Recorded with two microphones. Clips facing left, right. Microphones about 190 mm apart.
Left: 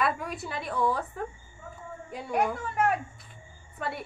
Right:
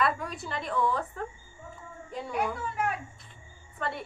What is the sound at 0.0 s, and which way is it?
A woman's voice, 5° left (ahead or behind).